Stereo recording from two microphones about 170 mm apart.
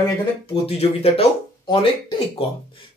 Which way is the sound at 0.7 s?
35° left (ahead or behind).